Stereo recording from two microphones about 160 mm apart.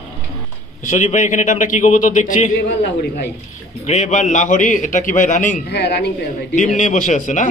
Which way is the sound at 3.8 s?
45° left (ahead or behind).